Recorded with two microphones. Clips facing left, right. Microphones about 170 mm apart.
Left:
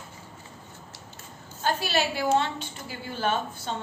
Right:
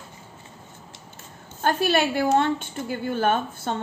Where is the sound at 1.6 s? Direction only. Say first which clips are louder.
Right 5 dB; 55° right (ahead or behind).